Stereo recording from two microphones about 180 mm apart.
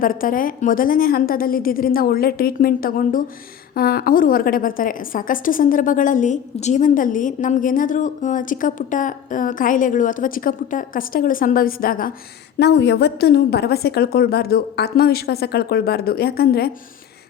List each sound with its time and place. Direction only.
0.0 s a woman's voice: 50° left (ahead or behind)
12.5 s a woman's voice: 70° left (ahead or behind)